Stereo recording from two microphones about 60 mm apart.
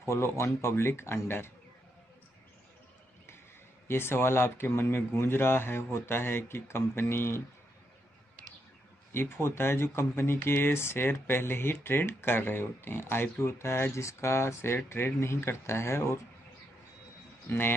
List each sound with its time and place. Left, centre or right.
0.0 s speech: left
3.8 s speech: left
9.1 s speech: left
17.5 s speech: left